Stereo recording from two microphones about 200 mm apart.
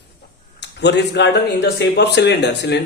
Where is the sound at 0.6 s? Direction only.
60° left (ahead or behind).